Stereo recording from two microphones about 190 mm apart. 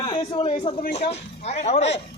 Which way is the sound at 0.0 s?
25° left (ahead or behind).